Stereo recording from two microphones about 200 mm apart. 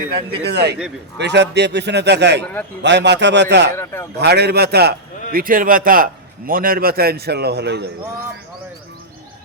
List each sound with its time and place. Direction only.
0.4 s a man's voice: 55° right (ahead or behind)